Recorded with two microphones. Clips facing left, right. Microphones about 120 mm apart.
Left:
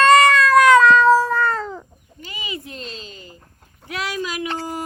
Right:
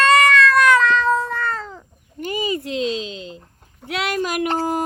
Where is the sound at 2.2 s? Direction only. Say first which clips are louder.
Right 10 dB; 45° right (ahead or behind).